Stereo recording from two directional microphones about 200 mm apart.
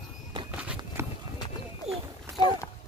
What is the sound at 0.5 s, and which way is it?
Run, 5° right (ahead or behind).